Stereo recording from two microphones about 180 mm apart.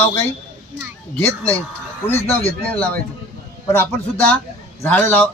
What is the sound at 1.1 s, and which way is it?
Speech, 10° left (ahead or behind).